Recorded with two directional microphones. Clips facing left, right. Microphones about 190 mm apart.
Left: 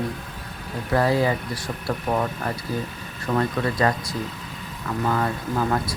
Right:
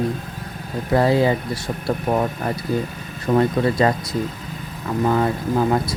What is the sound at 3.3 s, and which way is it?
Speech, 25° right (ahead or behind).